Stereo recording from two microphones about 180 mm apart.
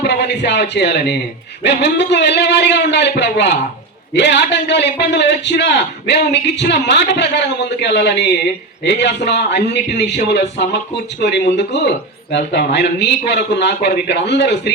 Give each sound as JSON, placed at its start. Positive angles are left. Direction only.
{"t": 0.0, "sound": "a man's voice", "side_deg": 70}